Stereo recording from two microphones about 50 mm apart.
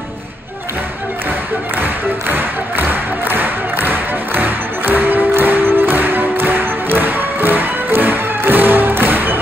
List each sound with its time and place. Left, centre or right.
1.8 s music: right